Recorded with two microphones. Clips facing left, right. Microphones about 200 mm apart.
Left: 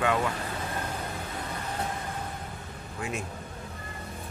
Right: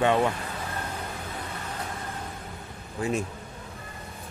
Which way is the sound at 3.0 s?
35° right (ahead or behind).